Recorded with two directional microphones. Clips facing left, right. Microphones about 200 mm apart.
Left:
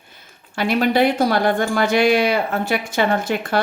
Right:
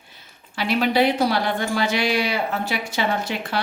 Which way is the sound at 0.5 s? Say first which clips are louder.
Left 3 dB; 50° left (ahead or behind).